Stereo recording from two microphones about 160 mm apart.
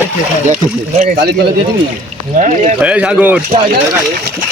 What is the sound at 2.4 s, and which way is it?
Speech, 45° right (ahead or behind).